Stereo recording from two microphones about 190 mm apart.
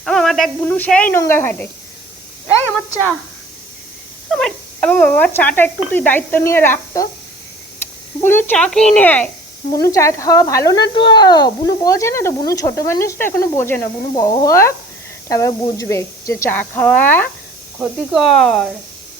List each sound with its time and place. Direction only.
0.0 s speech: 5° left (ahead or behind)
4.3 s speech: centre (ahead or behind)
7.8 s a sound: 10° left (ahead or behind)
8.2 s speech: 10° left (ahead or behind)
17.7 s speech: centre (ahead or behind)